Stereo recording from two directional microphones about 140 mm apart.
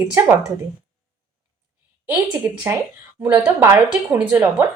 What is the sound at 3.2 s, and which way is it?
A woman's voice, 20° right (ahead or behind).